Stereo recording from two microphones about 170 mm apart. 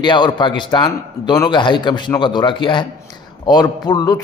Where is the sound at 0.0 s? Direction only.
25° left (ahead or behind).